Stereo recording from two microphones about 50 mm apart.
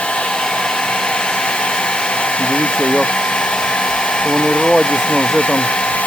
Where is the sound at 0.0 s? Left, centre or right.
Left.